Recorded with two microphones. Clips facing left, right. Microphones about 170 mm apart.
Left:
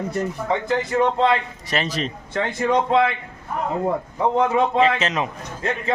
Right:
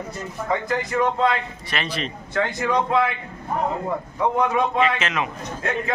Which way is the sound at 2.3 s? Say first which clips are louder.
Left 2 dB; 25° left (ahead or behind).